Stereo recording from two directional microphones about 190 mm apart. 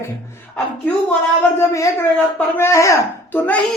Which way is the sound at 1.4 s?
15° left (ahead or behind).